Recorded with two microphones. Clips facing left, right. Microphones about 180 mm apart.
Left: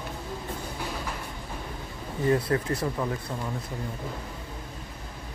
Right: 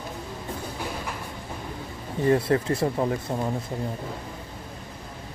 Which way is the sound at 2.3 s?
30° right (ahead or behind).